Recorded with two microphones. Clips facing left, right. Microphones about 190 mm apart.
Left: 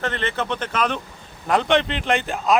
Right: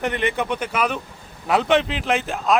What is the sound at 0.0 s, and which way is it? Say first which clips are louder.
Speech: right 2 dB; 15° right (ahead or behind).